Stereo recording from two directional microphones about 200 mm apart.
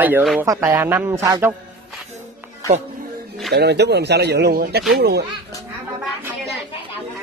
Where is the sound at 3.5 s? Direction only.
55° right (ahead or behind).